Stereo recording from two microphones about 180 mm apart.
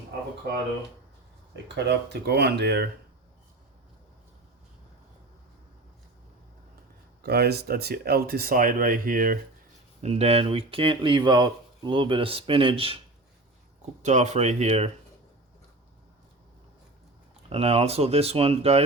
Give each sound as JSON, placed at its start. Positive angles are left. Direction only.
{"t": 1.6, "sound": "speech", "side_deg": -70}
{"t": 7.2, "sound": "speech", "side_deg": -60}
{"t": 10.0, "sound": "speech", "side_deg": -35}
{"t": 14.0, "sound": "speech", "side_deg": -40}
{"t": 17.5, "sound": "speech", "side_deg": -35}